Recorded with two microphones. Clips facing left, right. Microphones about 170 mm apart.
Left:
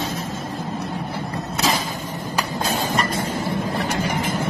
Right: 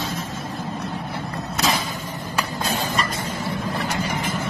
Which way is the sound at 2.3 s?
40° left (ahead or behind).